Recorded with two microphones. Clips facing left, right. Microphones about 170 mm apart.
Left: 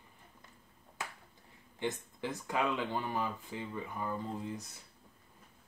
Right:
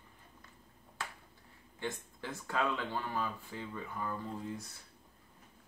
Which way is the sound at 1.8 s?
15° left (ahead or behind).